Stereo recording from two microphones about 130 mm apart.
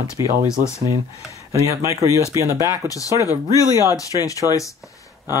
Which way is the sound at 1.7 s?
25° right (ahead or behind).